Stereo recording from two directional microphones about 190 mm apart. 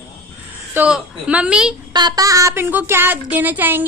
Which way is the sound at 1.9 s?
20° right (ahead or behind).